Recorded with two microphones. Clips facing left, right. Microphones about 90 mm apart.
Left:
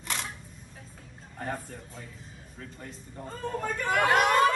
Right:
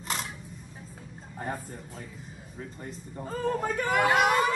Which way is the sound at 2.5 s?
5° right (ahead or behind).